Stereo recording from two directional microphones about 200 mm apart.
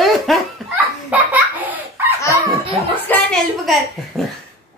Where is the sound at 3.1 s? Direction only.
5° left (ahead or behind).